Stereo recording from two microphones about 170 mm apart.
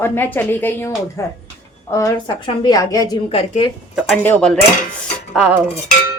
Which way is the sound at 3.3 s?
35° left (ahead or behind).